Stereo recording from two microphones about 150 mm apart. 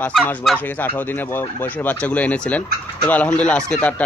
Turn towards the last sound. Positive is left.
turn(degrees=10)  # may be behind; listen again after turning